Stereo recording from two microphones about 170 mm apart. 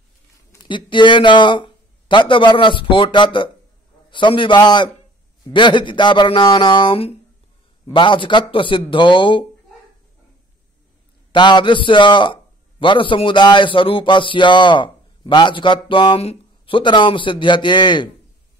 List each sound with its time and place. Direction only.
0.5 s a man's voice: 25° left (ahead or behind)
11.3 s a man's voice: 25° left (ahead or behind)